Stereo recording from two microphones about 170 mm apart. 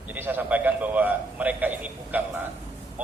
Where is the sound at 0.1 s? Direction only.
10° right (ahead or behind).